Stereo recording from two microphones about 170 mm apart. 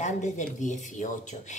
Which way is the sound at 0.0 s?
45° left (ahead or behind).